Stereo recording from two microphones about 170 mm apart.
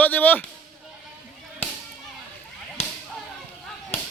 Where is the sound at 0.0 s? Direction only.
10° left (ahead or behind).